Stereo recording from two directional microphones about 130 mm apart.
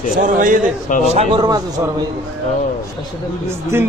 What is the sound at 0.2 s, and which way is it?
Speech, 90° right.